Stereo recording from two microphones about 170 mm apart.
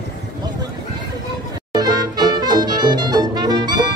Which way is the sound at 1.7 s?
25° right (ahead or behind).